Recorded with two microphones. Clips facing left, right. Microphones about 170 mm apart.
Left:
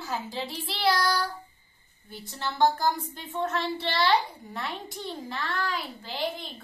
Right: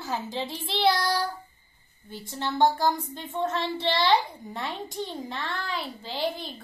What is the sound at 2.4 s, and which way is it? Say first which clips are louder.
A child's voice: right 1 dB; 20° right (ahead or behind).